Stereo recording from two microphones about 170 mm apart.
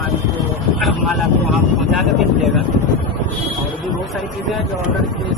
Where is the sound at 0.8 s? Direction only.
Centre (ahead or behind).